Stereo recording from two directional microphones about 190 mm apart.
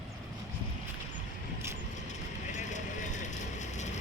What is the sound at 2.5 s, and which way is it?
Vehicle, 40° left (ahead or behind).